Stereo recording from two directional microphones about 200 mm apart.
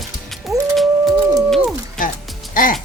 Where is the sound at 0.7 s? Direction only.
Centre (ahead or behind).